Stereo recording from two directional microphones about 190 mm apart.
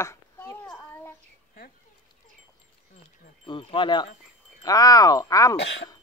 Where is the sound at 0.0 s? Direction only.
15° left (ahead or behind).